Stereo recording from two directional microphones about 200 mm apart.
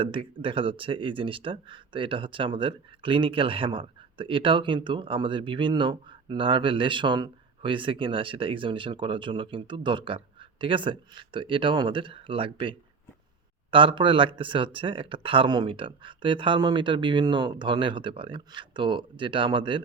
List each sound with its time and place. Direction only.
0.0 s speech: 25° right (ahead or behind)